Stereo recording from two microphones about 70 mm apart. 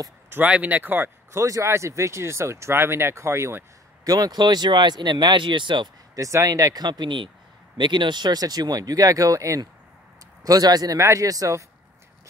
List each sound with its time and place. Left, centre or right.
0.5 s speech: right
1.4 s speech: right
4.0 s speech: right
6.1 s speech: right
6.8 s speech: right
10.4 s speech: right
11.0 s speech: right